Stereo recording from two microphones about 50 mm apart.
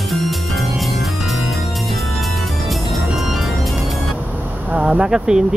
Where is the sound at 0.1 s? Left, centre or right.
Centre.